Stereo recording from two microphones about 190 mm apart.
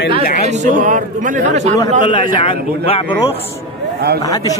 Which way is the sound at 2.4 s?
30° left (ahead or behind).